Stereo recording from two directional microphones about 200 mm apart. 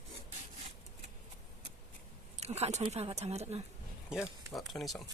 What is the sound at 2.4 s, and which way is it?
Speech, 30° right (ahead or behind).